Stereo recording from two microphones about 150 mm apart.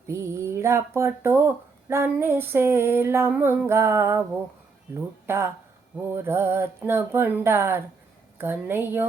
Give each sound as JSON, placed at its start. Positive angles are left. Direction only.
{"t": 0.1, "sound": "speech", "side_deg": -20}
{"t": 5.2, "sound": "speech", "side_deg": -15}